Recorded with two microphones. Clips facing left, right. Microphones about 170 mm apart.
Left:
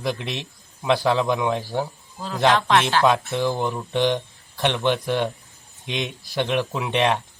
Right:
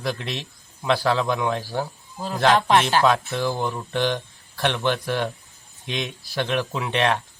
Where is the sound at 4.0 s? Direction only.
20° left (ahead or behind).